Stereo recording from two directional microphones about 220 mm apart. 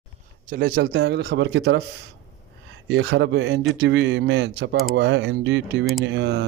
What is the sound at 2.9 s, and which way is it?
Speech, 55° right (ahead or behind).